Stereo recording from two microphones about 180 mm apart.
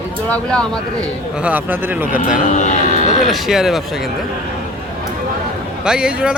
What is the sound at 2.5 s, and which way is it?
Speech, 45° left (ahead or behind).